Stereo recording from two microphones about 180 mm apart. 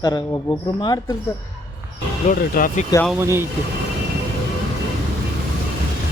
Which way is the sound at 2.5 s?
50° left (ahead or behind).